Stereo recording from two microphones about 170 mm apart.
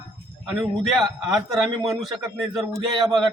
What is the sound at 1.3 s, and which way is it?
A man's voice, centre (ahead or behind).